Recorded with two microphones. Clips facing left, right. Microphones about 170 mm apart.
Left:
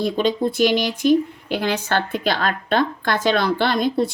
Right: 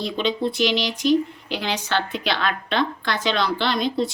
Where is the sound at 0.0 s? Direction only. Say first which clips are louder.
Left 4 dB; 45° left (ahead or behind).